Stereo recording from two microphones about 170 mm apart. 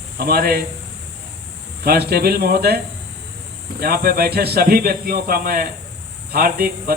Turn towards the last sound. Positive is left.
turn(degrees=-60)  # may be behind; listen again after turning